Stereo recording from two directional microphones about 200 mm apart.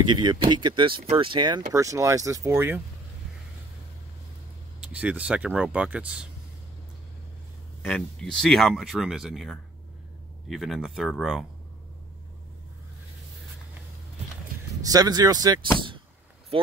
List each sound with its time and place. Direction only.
0.1 s speech: 20° right (ahead or behind)
4.8 s speech: 5° right (ahead or behind)
7.8 s speech: 5° left (ahead or behind)
14.9 s speech: 20° right (ahead or behind)